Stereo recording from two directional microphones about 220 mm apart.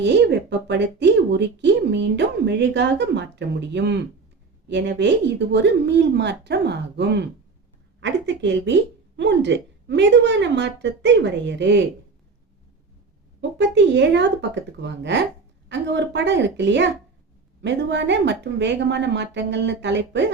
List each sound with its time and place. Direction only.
0.0 s a woman's voice: 50° right (ahead or behind)
13.6 s a woman's voice: 50° right (ahead or behind)